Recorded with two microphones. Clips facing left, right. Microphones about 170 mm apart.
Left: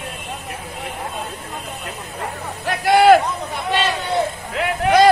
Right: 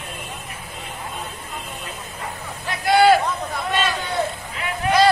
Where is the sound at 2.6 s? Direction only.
60° left (ahead or behind).